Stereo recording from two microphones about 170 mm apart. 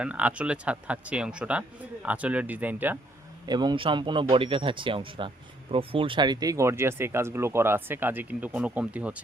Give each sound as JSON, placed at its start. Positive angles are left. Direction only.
{"t": 0.0, "sound": "speech", "side_deg": -10}
{"t": 3.4, "sound": "speech", "side_deg": -25}